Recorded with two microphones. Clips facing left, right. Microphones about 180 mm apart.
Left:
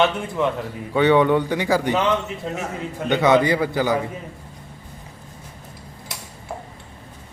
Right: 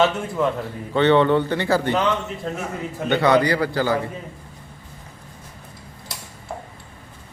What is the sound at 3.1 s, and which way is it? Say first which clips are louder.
Speech: left 1 dB; 20° left (ahead or behind).